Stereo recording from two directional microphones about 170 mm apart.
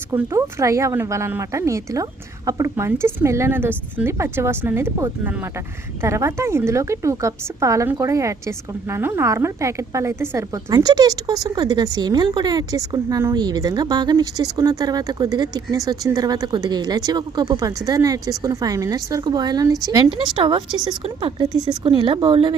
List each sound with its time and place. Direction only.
0.1 s a woman's voice: 15° right (ahead or behind); by 22.5 s 30° right (ahead or behind)